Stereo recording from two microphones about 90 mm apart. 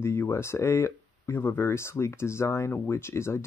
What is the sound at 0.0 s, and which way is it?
Speech, 30° left (ahead or behind).